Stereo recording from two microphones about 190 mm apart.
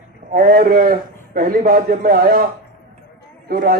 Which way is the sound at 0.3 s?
50° right (ahead or behind).